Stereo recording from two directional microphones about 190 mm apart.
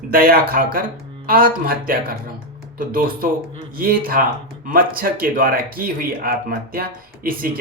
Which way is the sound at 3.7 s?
50° right (ahead or behind).